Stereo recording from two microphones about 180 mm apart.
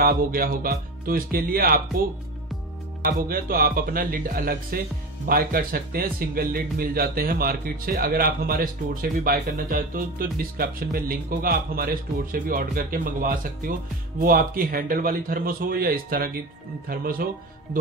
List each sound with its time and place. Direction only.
0.0 s music: 55° right (ahead or behind)
3.1 s music: 55° right (ahead or behind)